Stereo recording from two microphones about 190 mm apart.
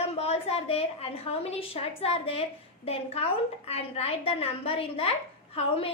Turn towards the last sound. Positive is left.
turn(degrees=30)  # may be behind; listen again after turning